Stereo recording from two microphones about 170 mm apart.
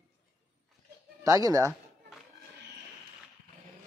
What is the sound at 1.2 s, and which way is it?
Speech, 20° right (ahead or behind).